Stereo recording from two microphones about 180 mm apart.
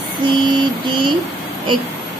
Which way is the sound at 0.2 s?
25° right (ahead or behind).